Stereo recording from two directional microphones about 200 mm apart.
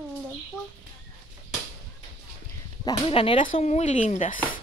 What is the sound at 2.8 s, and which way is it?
Speech, 25° left (ahead or behind).